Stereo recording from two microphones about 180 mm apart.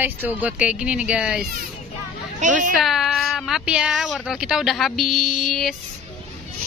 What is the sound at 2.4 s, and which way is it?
Speech, 45° right (ahead or behind).